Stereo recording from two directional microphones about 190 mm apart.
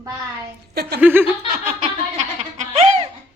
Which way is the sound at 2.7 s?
35° right (ahead or behind).